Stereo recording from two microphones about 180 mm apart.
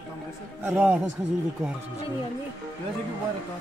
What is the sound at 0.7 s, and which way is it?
Speech, 10° right (ahead or behind).